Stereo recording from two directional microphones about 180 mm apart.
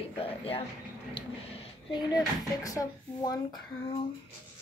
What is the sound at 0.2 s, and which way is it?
Speech, 30° left (ahead or behind).